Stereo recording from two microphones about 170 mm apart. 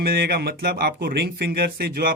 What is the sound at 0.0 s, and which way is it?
Speech, 65° right (ahead or behind).